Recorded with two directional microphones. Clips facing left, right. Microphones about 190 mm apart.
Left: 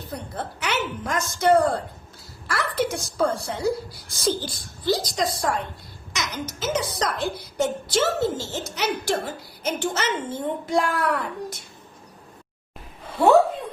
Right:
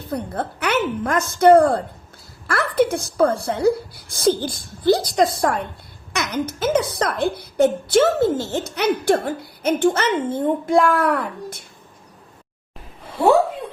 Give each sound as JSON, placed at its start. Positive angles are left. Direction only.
{"t": 0.1, "sound": "speech", "side_deg": -55}